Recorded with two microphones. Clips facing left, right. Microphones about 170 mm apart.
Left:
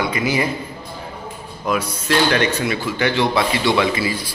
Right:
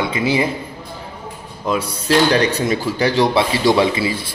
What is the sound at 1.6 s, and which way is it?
Speech, 30° right (ahead or behind).